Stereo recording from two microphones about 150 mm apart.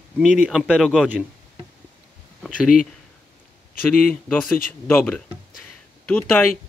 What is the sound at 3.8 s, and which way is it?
A man's voice, 10° left (ahead or behind).